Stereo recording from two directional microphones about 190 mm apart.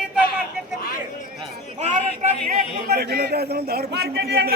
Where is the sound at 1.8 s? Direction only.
40° right (ahead or behind).